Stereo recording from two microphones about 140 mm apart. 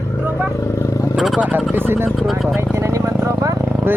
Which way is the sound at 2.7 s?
20° right (ahead or behind).